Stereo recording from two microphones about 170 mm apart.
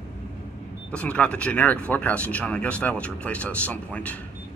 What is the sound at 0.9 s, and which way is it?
Speech, 5° left (ahead or behind).